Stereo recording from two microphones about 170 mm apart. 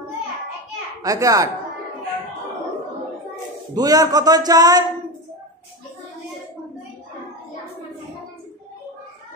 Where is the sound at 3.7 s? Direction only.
20° right (ahead or behind).